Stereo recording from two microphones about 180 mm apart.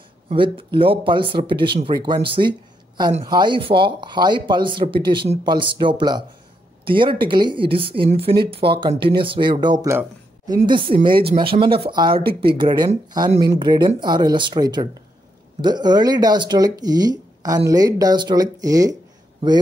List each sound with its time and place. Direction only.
0.3 s speech: 30° right (ahead or behind)